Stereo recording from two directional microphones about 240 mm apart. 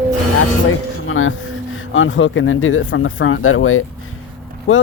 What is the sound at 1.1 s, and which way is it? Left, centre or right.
Speech, left.